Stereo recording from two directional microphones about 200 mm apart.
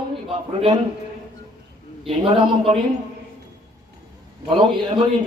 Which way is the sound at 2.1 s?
25° right (ahead or behind).